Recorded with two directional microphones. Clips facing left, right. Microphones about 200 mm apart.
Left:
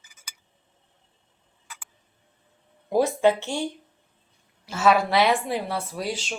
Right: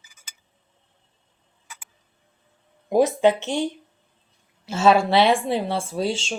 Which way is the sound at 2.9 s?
20° right (ahead or behind).